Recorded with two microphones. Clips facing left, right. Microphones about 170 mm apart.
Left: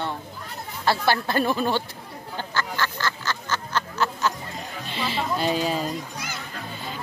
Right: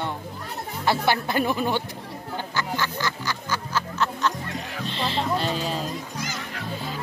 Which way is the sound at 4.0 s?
5° left (ahead or behind).